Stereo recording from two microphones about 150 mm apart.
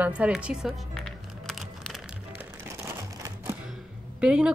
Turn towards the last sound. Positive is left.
turn(degrees=-5)  # may be behind; listen again after turning